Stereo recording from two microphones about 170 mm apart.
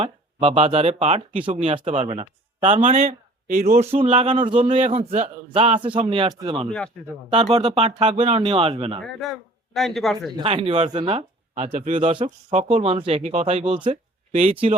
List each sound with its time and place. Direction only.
0.0 s speech: 35° right (ahead or behind)
2.8 s speech: 50° right (ahead or behind)
3.8 s speech: 40° right (ahead or behind)
6.7 s a man's voice: 5° left (ahead or behind)
7.3 s speech: 40° right (ahead or behind)
9.0 s speech: centre (ahead or behind)
10.4 s speech: 35° right (ahead or behind)
11.5 s speech: 45° right (ahead or behind)